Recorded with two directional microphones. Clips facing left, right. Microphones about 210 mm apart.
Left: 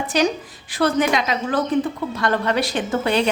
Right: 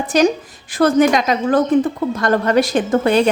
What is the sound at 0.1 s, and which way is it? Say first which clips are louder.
A woman's voice: right 6 dB; 45° right (ahead or behind).